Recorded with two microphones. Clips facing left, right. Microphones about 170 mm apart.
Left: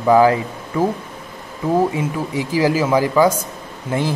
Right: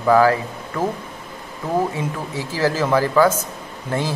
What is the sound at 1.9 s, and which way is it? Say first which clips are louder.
Speech: left 4 dB; 15° left (ahead or behind).